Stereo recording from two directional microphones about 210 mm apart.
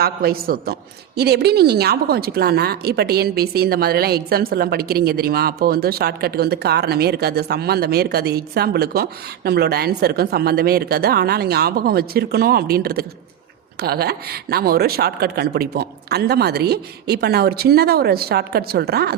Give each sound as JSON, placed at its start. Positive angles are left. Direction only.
{"t": 0.0, "sound": "a woman's voice", "side_deg": -45}